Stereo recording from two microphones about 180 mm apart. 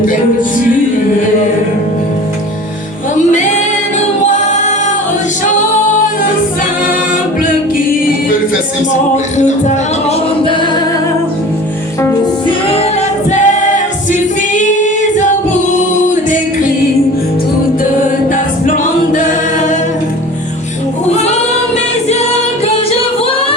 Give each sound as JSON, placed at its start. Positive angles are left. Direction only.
{"t": 8.9, "sound": "music", "side_deg": 40}
{"t": 12.5, "sound": "music", "side_deg": 30}
{"t": 13.3, "sound": "choir", "side_deg": 40}
{"t": 14.1, "sound": "singing", "side_deg": 45}
{"t": 16.0, "sound": "music", "side_deg": 45}
{"t": 21.2, "sound": "singing", "side_deg": 35}